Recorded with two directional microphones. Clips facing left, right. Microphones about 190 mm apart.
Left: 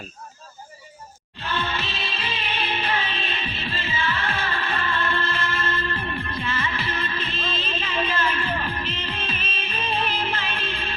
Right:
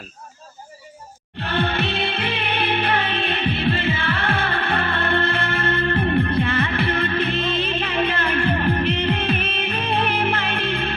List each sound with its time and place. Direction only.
1.4 s music: 60° right (ahead or behind)